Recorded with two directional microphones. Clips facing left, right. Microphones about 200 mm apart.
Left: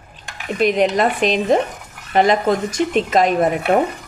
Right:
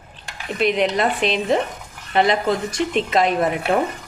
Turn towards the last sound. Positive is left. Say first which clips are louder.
# left 3 dB
turn(degrees=45)  # may be behind; listen again after turning